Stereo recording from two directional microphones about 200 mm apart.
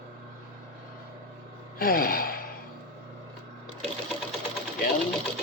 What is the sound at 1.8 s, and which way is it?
Gasp, 50° left (ahead or behind).